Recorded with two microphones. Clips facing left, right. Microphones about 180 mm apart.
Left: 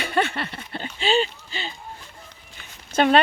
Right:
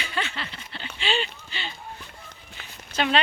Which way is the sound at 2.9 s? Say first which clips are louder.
Left 6 dB; 50° left (ahead or behind).